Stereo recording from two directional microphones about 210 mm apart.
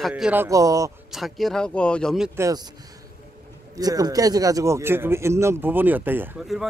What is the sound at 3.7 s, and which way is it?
Speech, 20° right (ahead or behind).